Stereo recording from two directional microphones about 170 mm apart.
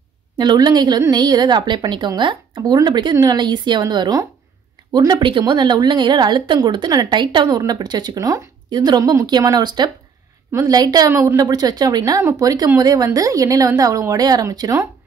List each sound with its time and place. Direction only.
0.4 s a woman's voice: 25° right (ahead or behind)